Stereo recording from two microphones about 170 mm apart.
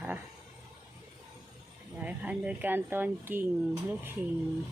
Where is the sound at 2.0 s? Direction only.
10° right (ahead or behind).